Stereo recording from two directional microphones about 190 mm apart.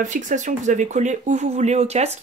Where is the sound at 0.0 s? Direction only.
40° right (ahead or behind).